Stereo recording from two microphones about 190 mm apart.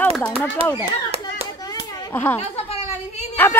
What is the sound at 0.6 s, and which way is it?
Speech, 30° right (ahead or behind).